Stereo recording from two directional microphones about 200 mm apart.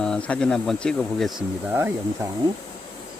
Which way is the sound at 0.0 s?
5° left (ahead or behind).